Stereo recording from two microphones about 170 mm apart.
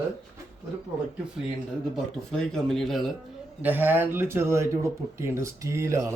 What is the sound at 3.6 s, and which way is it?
Speech, 10° right (ahead or behind).